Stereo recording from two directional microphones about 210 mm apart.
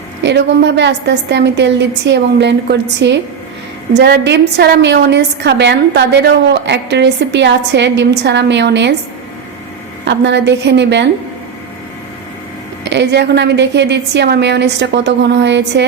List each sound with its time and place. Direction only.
0.2 s a woman's voice: 55° right (ahead or behind)
10.1 s a woman's voice: 55° right (ahead or behind)
12.8 s a woman's voice: 55° right (ahead or behind)